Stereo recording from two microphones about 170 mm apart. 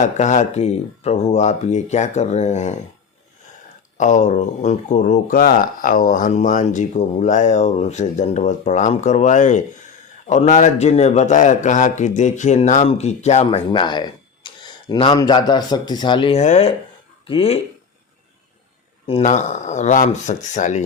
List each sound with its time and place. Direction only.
0.0 s a man's voice: 45° left (ahead or behind)
3.9 s a man's voice: 45° left (ahead or behind); by 16.4 s 30° left (ahead or behind)
16.4 s a man's voice: 40° left (ahead or behind)
19.2 s speech: 45° left (ahead or behind)